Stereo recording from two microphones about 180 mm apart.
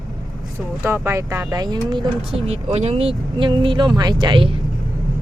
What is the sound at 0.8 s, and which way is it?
Speech, 15° right (ahead or behind).